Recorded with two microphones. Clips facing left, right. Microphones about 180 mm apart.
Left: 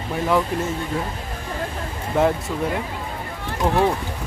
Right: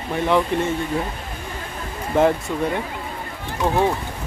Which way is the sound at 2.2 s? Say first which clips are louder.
Right 2 dB; centre (ahead or behind).